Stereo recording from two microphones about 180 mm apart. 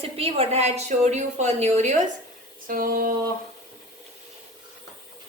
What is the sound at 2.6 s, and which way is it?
Speech, 50° right (ahead or behind).